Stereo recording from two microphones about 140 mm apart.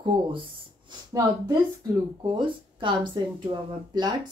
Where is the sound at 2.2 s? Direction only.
35° right (ahead or behind).